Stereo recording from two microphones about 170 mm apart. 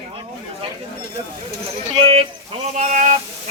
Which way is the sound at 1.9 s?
35° right (ahead or behind).